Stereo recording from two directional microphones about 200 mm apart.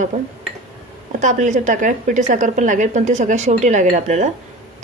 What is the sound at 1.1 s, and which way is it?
A woman's voice, 35° right (ahead or behind).